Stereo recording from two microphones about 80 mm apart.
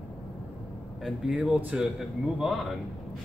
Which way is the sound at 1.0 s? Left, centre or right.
Centre.